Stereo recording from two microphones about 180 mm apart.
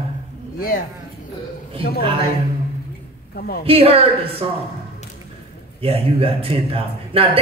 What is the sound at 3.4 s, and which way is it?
Speech, 60° left (ahead or behind).